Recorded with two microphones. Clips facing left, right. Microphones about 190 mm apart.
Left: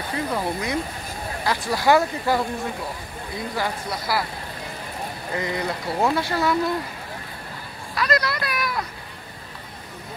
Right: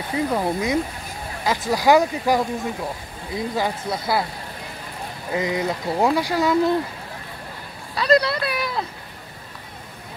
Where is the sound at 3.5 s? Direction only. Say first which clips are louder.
Right 2 dB; 20° right (ahead or behind).